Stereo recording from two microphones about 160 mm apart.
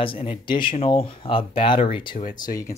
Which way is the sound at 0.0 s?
35° left (ahead or behind).